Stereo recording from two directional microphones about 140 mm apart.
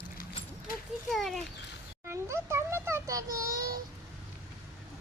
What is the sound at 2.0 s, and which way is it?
A child's voice, 20° right (ahead or behind).